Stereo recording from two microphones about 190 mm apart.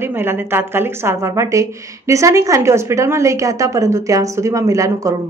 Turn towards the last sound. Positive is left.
turn(degrees=-15)  # may be behind; listen again after turning